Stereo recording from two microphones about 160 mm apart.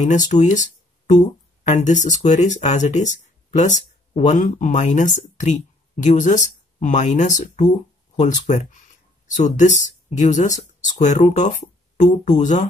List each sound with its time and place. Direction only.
0.0 s speech: 50° left (ahead or behind)
1.7 s speech: 50° left (ahead or behind)